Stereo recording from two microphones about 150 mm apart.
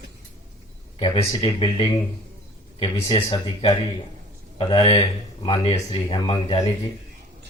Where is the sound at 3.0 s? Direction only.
40° left (ahead or behind).